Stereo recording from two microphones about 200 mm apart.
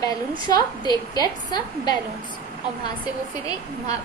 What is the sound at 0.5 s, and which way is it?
A woman's voice, 20° left (ahead or behind).